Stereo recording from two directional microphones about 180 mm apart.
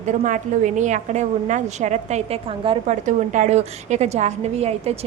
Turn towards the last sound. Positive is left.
turn(degrees=-35)  # may be behind; listen again after turning